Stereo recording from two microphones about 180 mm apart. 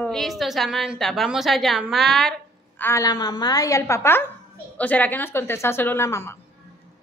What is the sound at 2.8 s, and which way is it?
A woman's voice, 15° left (ahead or behind).